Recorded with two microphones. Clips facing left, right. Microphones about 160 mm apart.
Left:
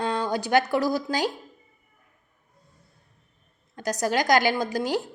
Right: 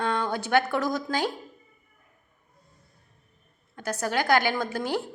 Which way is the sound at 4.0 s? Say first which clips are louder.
Left 2 dB; 15° left (ahead or behind).